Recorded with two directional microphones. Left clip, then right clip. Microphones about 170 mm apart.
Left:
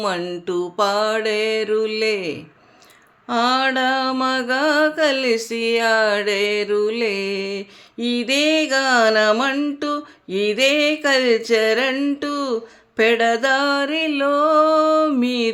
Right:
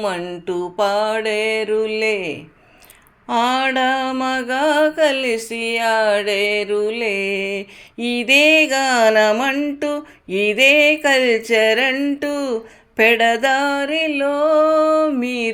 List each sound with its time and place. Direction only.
0.0 s music: 15° left (ahead or behind)
3.2 s mantra: centre (ahead or behind)
13.0 s music: centre (ahead or behind)